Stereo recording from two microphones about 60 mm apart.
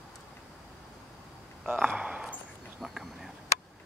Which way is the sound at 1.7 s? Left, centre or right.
Right.